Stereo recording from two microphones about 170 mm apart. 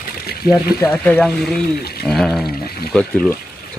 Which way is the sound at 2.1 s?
Centre (ahead or behind).